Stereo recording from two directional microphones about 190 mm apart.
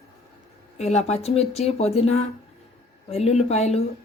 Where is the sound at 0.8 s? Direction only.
35° left (ahead or behind).